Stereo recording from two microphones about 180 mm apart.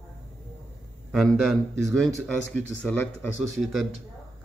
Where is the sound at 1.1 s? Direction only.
Centre (ahead or behind).